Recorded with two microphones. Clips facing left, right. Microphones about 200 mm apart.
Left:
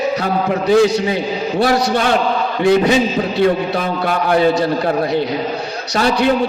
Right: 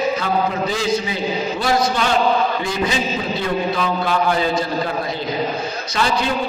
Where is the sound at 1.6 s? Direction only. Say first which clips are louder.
Left 5 dB; 60° left (ahead or behind).